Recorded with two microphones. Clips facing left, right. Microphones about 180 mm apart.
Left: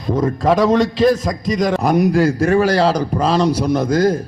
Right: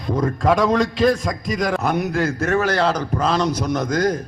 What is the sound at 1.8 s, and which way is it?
A man's voice, 35° left (ahead or behind).